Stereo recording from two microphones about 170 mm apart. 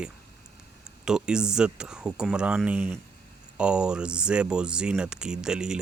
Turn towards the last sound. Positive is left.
turn(degrees=-5)  # may be behind; listen again after turning